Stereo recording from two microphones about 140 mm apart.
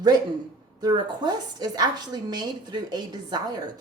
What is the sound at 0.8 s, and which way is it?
A woman's voice, 30° right (ahead or behind).